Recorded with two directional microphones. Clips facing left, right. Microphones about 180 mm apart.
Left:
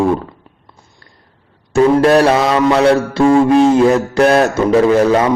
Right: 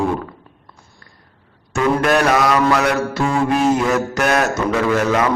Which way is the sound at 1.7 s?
30° left (ahead or behind).